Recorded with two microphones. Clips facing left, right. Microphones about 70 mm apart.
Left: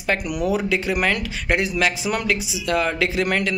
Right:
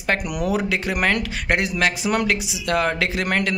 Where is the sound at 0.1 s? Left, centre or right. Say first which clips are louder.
Even; right.